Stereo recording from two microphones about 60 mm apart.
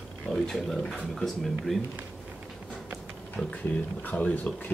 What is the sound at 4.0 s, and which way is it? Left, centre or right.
Speech, left.